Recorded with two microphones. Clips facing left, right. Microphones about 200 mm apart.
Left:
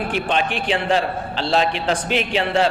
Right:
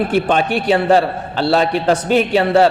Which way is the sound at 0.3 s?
45° right (ahead or behind).